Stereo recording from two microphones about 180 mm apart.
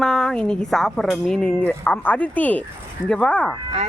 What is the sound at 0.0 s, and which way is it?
Speech, 5° left (ahead or behind).